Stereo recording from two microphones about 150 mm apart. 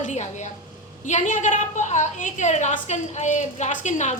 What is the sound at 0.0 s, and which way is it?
A woman's voice, 55° left (ahead or behind).